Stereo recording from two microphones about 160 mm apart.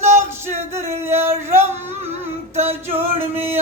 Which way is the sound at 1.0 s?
15° right (ahead or behind).